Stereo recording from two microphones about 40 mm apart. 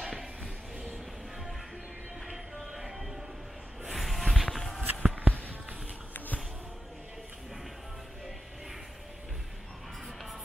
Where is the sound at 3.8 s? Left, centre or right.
Centre.